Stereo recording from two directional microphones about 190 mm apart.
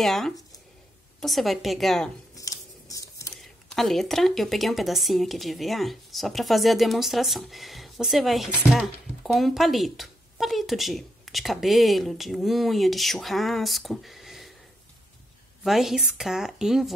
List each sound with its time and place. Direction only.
0.0 s speech: centre (ahead or behind)
2.3 s a sound: 20° left (ahead or behind)
3.3 s speech: centre (ahead or behind)
15.6 s speech: centre (ahead or behind)